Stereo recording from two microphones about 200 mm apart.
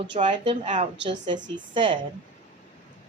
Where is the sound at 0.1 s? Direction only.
30° right (ahead or behind).